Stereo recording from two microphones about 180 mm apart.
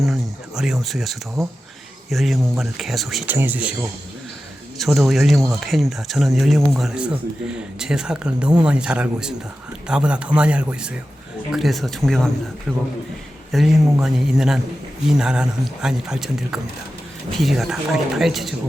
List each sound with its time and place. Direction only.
0.0 s speech: centre (ahead or behind)
4.8 s speech: centre (ahead or behind)